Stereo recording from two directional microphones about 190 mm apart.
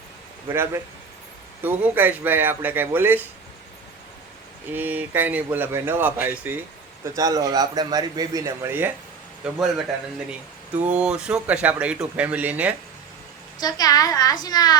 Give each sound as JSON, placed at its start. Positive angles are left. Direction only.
{"t": 0.4, "sound": "speech", "side_deg": -15}
{"t": 4.7, "sound": "speech", "side_deg": -10}
{"t": 10.8, "sound": "speech", "side_deg": -5}
{"t": 13.6, "sound": "a woman's voice", "side_deg": 20}